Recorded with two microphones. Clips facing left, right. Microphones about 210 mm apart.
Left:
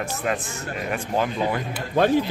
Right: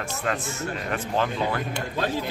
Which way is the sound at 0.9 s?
15° left (ahead or behind).